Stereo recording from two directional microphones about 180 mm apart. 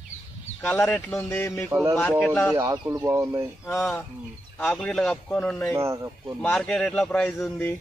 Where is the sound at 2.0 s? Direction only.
10° left (ahead or behind).